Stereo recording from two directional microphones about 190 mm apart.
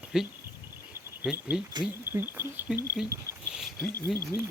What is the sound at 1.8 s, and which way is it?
Speech, 10° right (ahead or behind).